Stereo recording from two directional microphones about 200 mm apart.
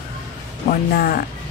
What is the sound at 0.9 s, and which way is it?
Speech, 50° left (ahead or behind).